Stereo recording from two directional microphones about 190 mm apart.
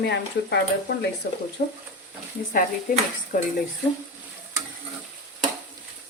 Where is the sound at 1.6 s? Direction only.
50° left (ahead or behind).